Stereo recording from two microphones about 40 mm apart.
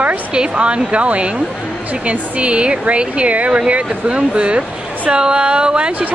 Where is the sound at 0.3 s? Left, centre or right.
Right.